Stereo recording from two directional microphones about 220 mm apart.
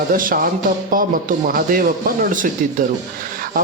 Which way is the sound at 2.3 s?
35° right (ahead or behind).